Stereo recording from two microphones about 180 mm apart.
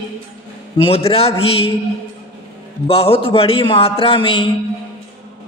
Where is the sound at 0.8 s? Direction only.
30° left (ahead or behind).